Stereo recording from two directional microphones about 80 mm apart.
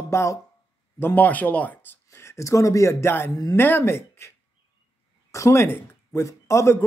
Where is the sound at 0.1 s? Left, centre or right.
Left.